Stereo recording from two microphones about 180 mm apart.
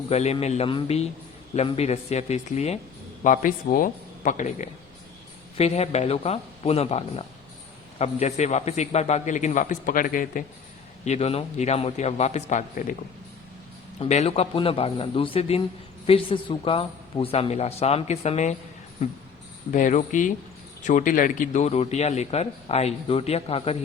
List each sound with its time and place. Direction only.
0.1 s a man's voice: 35° left (ahead or behind)
3.2 s a man's voice: 50° left (ahead or behind)
11.0 s a man's voice: 40° left (ahead or behind)
14.0 s a man's voice: 35° left (ahead or behind)
19.7 s a man's voice: 45° left (ahead or behind)